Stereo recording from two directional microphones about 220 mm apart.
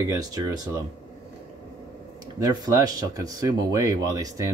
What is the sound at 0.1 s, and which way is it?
Speech, 15° right (ahead or behind).